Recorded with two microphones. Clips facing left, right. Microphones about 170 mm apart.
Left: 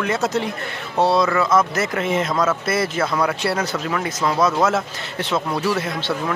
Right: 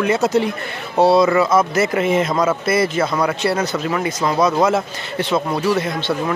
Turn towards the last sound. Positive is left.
turn(degrees=5)  # may be behind; listen again after turning